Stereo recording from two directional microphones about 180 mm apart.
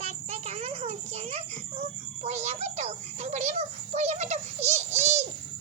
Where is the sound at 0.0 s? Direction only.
35° right (ahead or behind).